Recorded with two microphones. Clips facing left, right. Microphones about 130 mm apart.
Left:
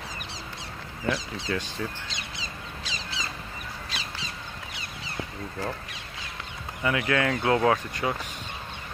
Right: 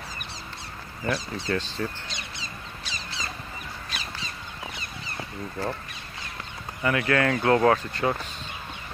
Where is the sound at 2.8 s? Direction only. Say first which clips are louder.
Left 1 dB; 90° left.